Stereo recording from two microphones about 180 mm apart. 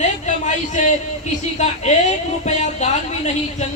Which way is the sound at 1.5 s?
40° left (ahead or behind).